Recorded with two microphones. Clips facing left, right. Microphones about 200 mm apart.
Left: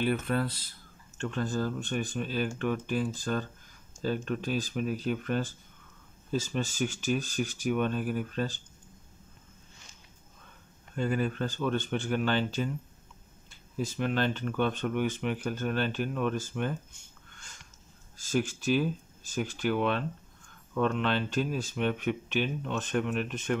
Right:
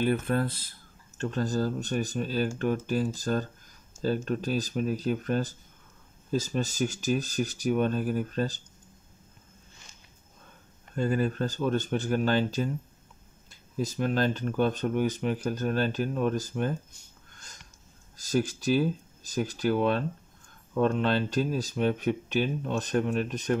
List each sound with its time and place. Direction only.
0.0 s speech: 45° right (ahead or behind)
1.1 s speech: 40° right (ahead or behind)
11.0 s speech: 40° right (ahead or behind)